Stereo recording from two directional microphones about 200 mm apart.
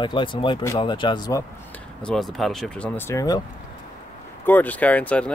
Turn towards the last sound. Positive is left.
turn(degrees=5)  # may be behind; listen again after turning